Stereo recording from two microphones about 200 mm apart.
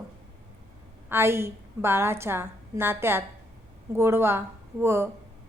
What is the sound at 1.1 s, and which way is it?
A woman's voice, 10° right (ahead or behind).